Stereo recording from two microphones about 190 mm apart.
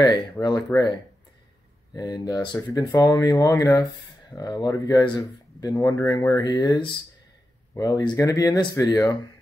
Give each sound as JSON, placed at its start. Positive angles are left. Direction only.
{"t": 0.0, "sound": "speech", "side_deg": 20}
{"t": 2.0, "sound": "speech", "side_deg": 20}